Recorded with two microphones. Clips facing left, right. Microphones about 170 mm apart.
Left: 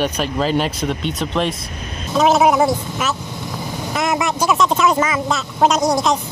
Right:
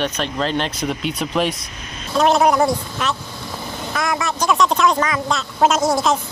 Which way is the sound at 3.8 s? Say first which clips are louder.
Left 3 dB; 20° left (ahead or behind).